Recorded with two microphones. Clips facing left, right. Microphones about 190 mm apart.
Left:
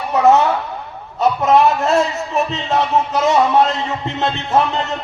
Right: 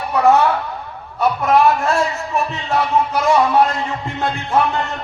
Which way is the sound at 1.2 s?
20° left (ahead or behind).